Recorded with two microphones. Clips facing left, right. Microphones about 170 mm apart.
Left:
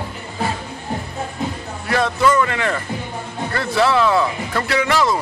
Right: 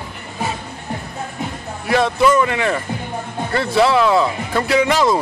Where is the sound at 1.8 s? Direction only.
15° right (ahead or behind).